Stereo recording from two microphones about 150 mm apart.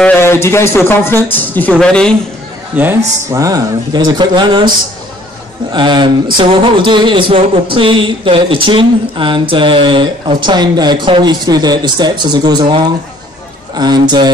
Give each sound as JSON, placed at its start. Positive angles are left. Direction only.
{"t": 0.0, "sound": "speech", "side_deg": 15}
{"t": 2.7, "sound": "speech", "side_deg": -15}